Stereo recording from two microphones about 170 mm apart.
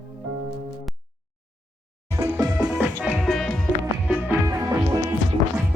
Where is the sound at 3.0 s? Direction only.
Centre (ahead or behind).